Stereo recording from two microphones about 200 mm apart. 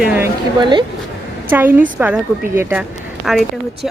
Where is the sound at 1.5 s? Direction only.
10° right (ahead or behind).